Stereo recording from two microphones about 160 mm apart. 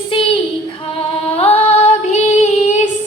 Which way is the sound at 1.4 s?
40° left (ahead or behind).